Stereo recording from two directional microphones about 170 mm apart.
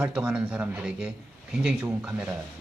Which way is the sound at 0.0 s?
5° right (ahead or behind).